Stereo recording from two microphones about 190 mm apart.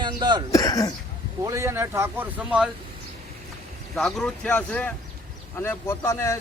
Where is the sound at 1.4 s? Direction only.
15° right (ahead or behind).